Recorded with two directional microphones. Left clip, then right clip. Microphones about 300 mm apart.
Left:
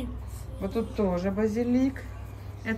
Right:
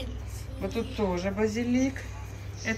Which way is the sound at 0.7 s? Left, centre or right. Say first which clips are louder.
Left 2 dB; centre.